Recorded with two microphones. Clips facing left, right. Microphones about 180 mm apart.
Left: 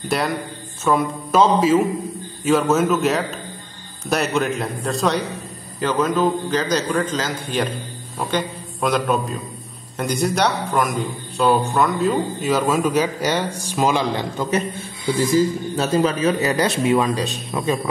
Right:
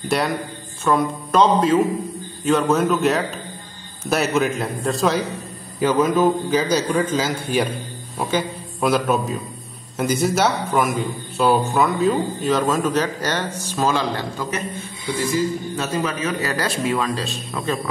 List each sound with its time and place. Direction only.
0.1 s a man's voice: centre (ahead or behind); by 14.5 s 15° left (ahead or behind)
15.7 s a man's voice: 30° left (ahead or behind)
16.4 s speech: 20° left (ahead or behind)